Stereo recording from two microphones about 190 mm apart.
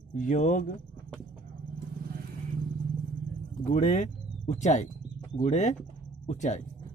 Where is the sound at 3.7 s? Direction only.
40° left (ahead or behind).